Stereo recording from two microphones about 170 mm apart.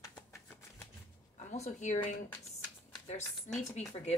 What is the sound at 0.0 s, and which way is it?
Shuffling cards, 15° left (ahead or behind).